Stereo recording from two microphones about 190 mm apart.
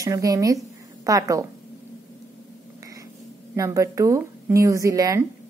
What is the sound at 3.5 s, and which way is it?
Speech, 15° right (ahead or behind).